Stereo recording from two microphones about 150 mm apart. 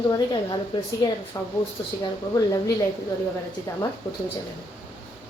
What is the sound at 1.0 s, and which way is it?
Speech, 30° left (ahead or behind).